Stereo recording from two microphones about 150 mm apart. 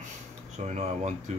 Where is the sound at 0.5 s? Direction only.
50° right (ahead or behind).